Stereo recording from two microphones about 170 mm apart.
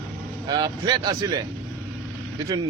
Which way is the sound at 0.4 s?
25° right (ahead or behind).